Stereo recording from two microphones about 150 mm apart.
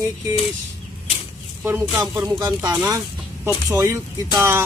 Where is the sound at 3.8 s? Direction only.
25° right (ahead or behind).